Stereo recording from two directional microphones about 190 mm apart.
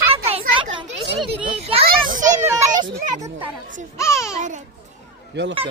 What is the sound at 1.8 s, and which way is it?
Children playing, 45° right (ahead or behind).